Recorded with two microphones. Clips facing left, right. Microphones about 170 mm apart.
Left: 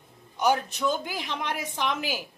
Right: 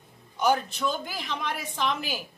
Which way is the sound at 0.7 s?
20° left (ahead or behind).